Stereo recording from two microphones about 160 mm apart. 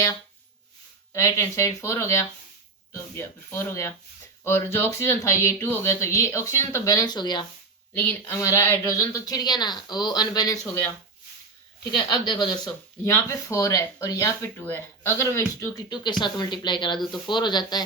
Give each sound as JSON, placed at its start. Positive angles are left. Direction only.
{"t": 1.1, "sound": "speech", "side_deg": 20}
{"t": 7.9, "sound": "speech", "side_deg": 15}
{"t": 10.6, "sound": "speech", "side_deg": 10}
{"t": 11.9, "sound": "speech", "side_deg": 25}
{"t": 13.1, "sound": "speech", "side_deg": 15}